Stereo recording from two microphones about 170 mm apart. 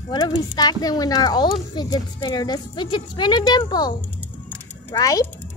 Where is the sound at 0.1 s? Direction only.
25° left (ahead or behind).